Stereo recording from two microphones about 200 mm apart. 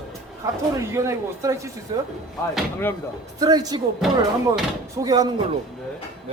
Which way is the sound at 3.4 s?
20° right (ahead or behind).